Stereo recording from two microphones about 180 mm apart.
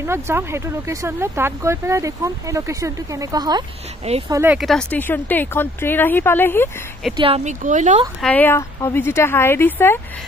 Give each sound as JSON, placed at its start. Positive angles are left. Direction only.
{"t": 0.0, "sound": "speech", "side_deg": -15}
{"t": 4.6, "sound": "speech", "side_deg": 0}
{"t": 7.2, "sound": "speech", "side_deg": -30}
{"t": 8.2, "sound": "speech", "side_deg": 10}